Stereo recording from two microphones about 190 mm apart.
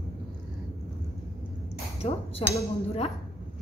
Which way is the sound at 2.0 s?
35° left (ahead or behind).